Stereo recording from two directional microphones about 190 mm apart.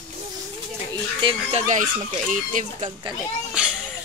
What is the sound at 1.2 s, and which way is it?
Speech, 30° right (ahead or behind).